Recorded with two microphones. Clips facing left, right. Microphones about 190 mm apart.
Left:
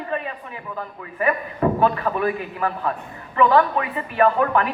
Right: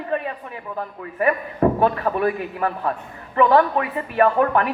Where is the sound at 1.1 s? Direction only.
45° right (ahead or behind).